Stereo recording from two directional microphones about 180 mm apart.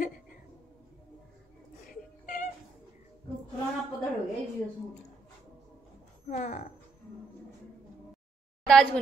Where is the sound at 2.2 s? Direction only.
45° left (ahead or behind).